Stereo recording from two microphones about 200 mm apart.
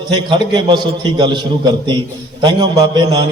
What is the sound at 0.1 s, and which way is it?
A man's voice, 20° right (ahead or behind).